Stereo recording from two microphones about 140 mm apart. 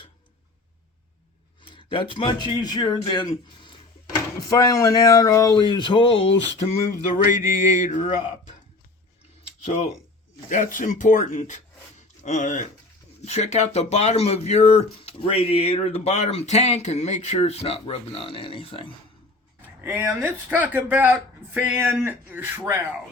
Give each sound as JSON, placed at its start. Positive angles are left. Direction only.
{"t": 1.7, "sound": "speech", "side_deg": 35}
{"t": 7.3, "sound": "mantra", "side_deg": 70}
{"t": 10.5, "sound": "speech", "side_deg": 65}
{"t": 12.2, "sound": "mantra", "side_deg": 60}
{"t": 13.2, "sound": "speech", "side_deg": 50}
{"t": 19.8, "sound": "a sound", "side_deg": -15}